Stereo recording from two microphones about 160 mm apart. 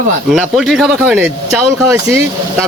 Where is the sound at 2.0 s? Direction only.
15° right (ahead or behind).